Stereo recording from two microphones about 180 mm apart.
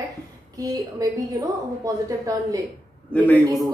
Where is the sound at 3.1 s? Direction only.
10° left (ahead or behind).